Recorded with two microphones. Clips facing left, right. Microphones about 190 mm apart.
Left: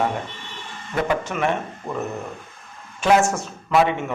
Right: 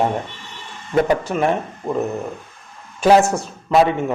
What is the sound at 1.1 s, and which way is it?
A man's voice, 35° right (ahead or behind).